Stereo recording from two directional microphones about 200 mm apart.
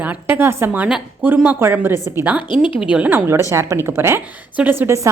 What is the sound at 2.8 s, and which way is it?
A woman's voice, 5° right (ahead or behind).